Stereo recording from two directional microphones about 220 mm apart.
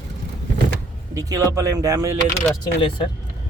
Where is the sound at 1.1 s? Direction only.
15° right (ahead or behind).